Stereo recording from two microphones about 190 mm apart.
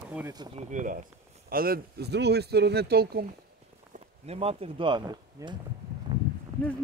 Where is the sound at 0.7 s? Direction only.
45° right (ahead or behind).